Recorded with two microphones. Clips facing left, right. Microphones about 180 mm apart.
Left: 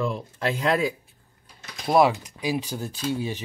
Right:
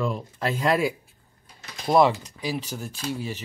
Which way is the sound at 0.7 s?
10° right (ahead or behind).